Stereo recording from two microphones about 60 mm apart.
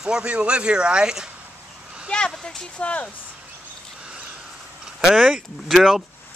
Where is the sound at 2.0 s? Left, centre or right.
Centre.